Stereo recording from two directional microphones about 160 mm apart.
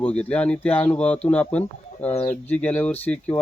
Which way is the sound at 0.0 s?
5° left (ahead or behind).